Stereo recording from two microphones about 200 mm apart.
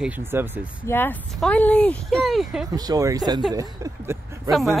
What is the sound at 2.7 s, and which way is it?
Speech, 20° right (ahead or behind).